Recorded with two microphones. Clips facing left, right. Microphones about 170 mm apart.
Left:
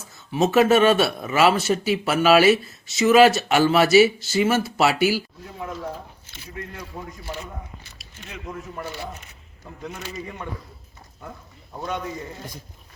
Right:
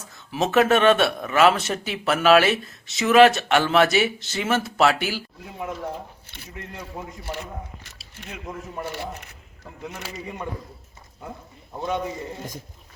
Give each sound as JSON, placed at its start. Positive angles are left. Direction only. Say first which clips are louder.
{"t": 0.3, "sound": "speech", "louder": "left 2 dB", "side_deg": 0}
{"t": 6.6, "sound": "speech", "louder": "even", "side_deg": -20}
{"t": 8.5, "sound": "speech", "louder": "left 1 dB", "side_deg": -25}
{"t": 9.8, "sound": "speech", "louder": "left 1 dB", "side_deg": -10}